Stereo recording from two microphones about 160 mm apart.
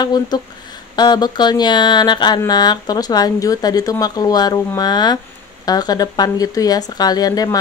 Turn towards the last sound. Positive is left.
turn(degrees=25)  # may be behind; listen again after turning